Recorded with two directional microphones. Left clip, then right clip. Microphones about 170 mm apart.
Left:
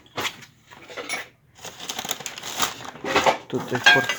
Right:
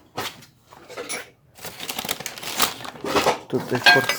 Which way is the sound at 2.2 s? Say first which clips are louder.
Right 4 dB; 35° right (ahead or behind).